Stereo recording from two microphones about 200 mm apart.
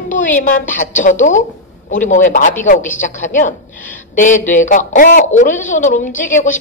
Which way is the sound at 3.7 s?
10° left (ahead or behind).